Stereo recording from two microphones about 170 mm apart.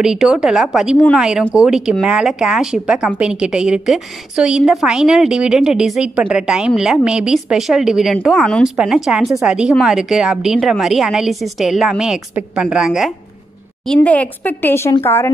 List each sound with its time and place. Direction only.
0.0 s a woman's voice: 5° right (ahead or behind)
13.8 s speech: 10° left (ahead or behind)